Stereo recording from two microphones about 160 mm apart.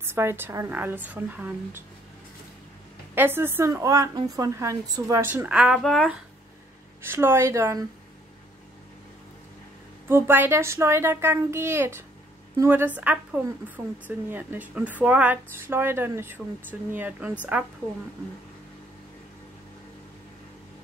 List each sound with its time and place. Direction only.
0.0 s a woman's voice: 15° right (ahead or behind)
3.2 s a woman's voice: 15° right (ahead or behind); by 6.0 s centre (ahead or behind)
7.0 s a woman's voice: 15° right (ahead or behind)
10.0 s a woman's voice: 15° right (ahead or behind)